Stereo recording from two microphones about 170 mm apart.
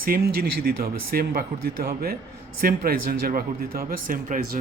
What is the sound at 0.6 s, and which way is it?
A man's voice, 60° right (ahead or behind).